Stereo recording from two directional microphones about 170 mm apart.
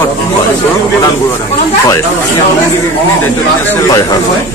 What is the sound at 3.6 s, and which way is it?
Speech, 20° left (ahead or behind).